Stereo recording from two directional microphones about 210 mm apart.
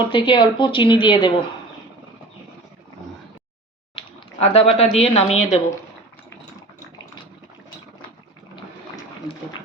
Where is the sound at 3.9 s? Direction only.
25° left (ahead or behind).